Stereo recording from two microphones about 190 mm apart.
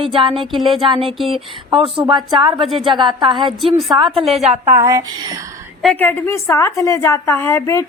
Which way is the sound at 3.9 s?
25° right (ahead or behind).